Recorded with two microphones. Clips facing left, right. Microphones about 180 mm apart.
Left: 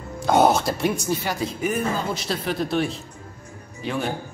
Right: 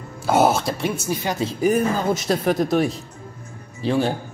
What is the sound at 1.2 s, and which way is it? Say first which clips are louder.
Speech: right 5 dB; 25° right (ahead or behind).